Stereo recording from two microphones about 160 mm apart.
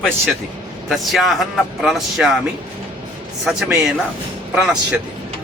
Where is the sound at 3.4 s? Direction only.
5° right (ahead or behind).